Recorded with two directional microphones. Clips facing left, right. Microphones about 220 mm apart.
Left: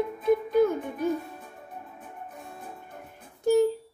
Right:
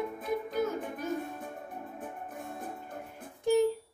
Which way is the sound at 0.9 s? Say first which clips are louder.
Left 6 dB; 50° right (ahead or behind).